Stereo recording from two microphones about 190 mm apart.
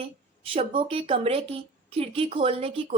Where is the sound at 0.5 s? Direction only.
30° right (ahead or behind).